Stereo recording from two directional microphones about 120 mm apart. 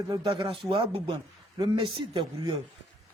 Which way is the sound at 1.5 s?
35° right (ahead or behind).